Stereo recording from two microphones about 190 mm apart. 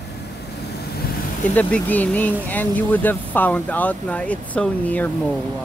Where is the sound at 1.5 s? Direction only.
10° left (ahead or behind).